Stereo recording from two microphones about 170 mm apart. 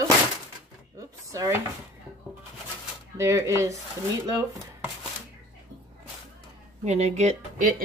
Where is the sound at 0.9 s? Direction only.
20° right (ahead or behind).